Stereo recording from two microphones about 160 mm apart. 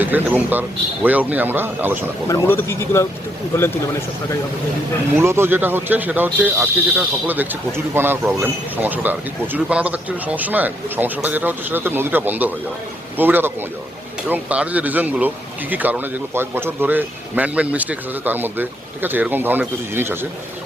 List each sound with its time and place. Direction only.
0.0 s speech: 10° right (ahead or behind)
2.2 s speech: 15° left (ahead or behind)
5.1 s speech: 15° right (ahead or behind)